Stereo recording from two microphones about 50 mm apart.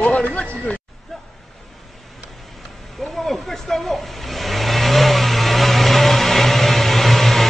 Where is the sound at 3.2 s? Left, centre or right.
Centre.